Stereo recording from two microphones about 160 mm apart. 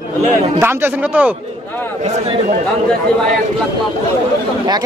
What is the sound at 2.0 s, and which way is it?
Speech, 40° right (ahead or behind).